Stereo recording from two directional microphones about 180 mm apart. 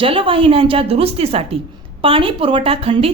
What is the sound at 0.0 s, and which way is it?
A woman's voice, 30° right (ahead or behind).